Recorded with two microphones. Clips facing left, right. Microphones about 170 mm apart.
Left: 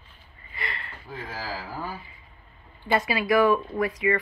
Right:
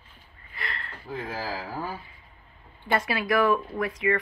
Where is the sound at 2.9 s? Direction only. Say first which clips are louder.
Left 2 dB; centre (ahead or behind).